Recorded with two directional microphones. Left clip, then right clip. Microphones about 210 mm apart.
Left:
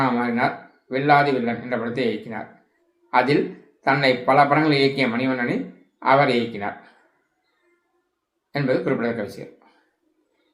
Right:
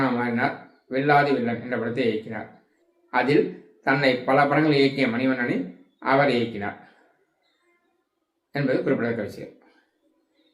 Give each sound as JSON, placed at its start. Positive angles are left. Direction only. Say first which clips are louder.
{"t": 0.2, "sound": "a man's voice", "louder": "left 3 dB", "side_deg": 15}
{"t": 8.5, "sound": "a man's voice", "louder": "left 1 dB", "side_deg": 15}